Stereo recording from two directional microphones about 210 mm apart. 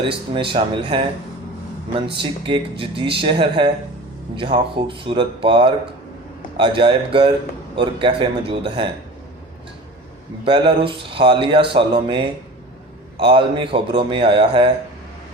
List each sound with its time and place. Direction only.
0.3 s speech: 25° right (ahead or behind)
2.2 s speech: 25° right (ahead or behind)
10.4 s speech: 25° right (ahead or behind)